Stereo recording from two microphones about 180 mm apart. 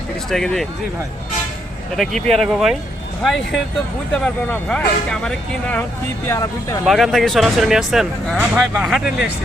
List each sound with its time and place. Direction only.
0.3 s speech: centre (ahead or behind)
2.0 s speech: centre (ahead or behind)
6.2 s speech: 15° left (ahead or behind)
6.8 s speech: centre (ahead or behind)